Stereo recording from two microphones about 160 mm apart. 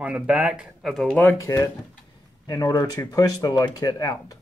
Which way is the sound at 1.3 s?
20° left (ahead or behind).